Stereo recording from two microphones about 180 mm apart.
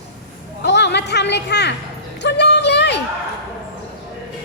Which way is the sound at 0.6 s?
70° left (ahead or behind).